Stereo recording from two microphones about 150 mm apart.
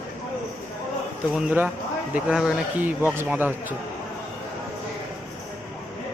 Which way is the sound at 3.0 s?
15° right (ahead or behind).